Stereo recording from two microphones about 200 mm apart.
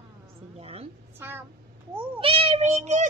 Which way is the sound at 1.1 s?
10° right (ahead or behind).